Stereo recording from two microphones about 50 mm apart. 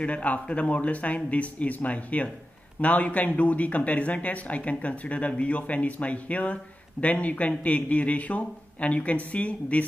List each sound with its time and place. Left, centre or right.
0.0 s speech: left